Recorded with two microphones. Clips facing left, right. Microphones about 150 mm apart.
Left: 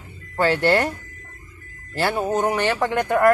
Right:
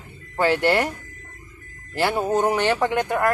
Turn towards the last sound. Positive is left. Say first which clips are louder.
# even
turn(degrees=-20)  # may be behind; listen again after turning